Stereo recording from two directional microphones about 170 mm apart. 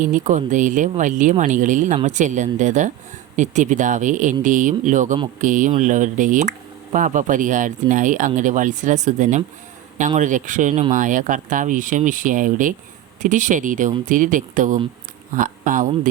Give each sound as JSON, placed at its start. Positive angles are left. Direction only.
{"t": 0.1, "sound": "speech", "side_deg": -50}